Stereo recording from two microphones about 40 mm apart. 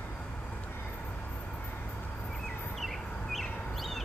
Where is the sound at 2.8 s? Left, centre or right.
Centre.